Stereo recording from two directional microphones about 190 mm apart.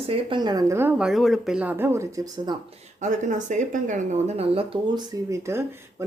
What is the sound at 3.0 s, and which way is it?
Speech, 40° right (ahead or behind).